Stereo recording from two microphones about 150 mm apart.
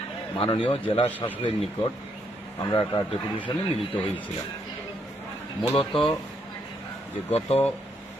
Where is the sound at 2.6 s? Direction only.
25° left (ahead or behind).